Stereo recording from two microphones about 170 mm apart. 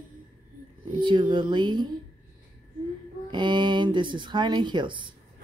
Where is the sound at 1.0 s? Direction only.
30° right (ahead or behind).